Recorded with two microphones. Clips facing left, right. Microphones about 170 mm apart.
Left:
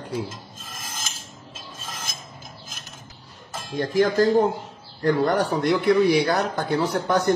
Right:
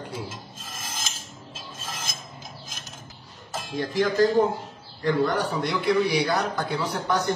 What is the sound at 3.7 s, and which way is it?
Speech, 45° left (ahead or behind).